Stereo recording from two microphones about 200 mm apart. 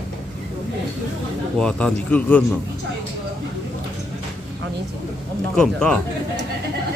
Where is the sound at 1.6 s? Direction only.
5° left (ahead or behind).